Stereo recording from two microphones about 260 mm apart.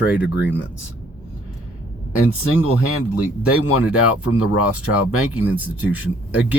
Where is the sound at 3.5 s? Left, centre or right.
Left.